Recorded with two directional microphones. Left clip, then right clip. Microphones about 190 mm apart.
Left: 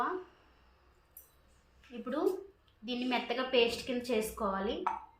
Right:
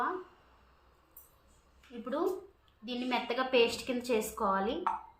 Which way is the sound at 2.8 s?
10° right (ahead or behind).